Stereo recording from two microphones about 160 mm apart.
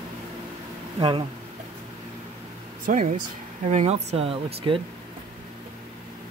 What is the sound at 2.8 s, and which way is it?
Speech, 50° right (ahead or behind).